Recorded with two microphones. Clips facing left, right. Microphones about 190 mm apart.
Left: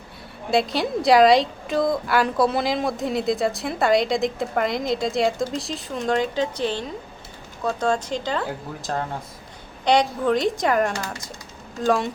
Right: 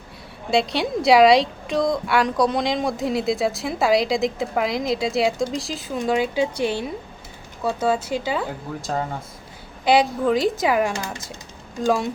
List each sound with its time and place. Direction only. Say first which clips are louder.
0.5 s a woman's voice: even; centre (ahead or behind)